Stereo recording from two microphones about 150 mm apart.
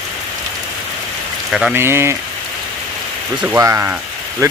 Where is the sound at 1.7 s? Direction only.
15° right (ahead or behind).